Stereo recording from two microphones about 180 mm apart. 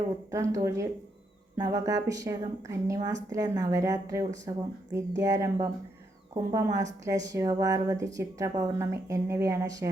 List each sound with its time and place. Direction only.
0.3 s a woman's voice: 15° right (ahead or behind)